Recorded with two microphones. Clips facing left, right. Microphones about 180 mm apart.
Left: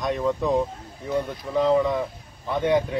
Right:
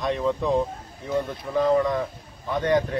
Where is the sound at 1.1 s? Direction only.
15° left (ahead or behind).